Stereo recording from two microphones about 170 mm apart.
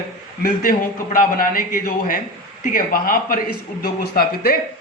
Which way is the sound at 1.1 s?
55° left (ahead or behind).